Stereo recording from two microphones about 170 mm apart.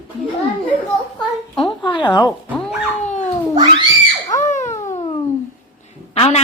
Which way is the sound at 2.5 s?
5° left (ahead or behind).